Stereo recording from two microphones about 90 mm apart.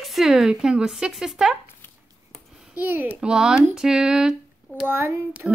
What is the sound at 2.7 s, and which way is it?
Speech, 20° right (ahead or behind).